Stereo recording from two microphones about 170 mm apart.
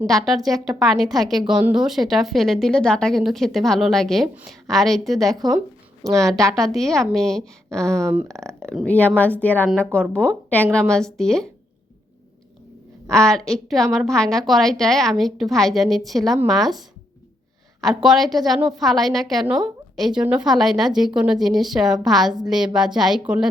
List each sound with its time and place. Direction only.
0.1 s a woman's voice: centre (ahead or behind)
5.3 s a woman's voice: 20° right (ahead or behind)
6.7 s a woman's voice: centre (ahead or behind)
7.9 s speech: 15° right (ahead or behind)
8.4 s a woman's voice: 5° left (ahead or behind)
13.1 s a woman's voice: 5° left (ahead or behind)